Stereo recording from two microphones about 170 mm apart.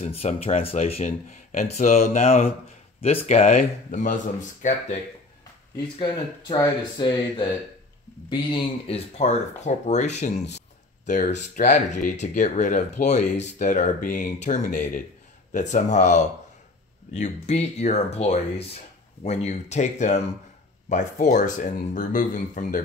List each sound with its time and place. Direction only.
0.0 s speech: 40° left (ahead or behind)
5.9 s speech: 25° left (ahead or behind); by 22.8 s 50° left (ahead or behind)